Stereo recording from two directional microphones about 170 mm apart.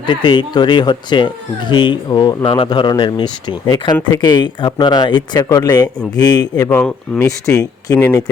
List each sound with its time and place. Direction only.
0.0 s speech: 30° left (ahead or behind)
6.7 s speech: 10° left (ahead or behind)
7.3 s speech: 20° left (ahead or behind)